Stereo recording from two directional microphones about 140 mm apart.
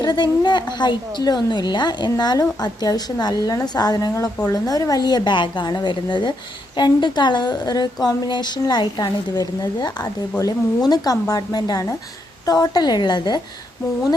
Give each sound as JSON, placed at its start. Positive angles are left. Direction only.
{"t": 0.0, "sound": "a woman's voice", "side_deg": 30}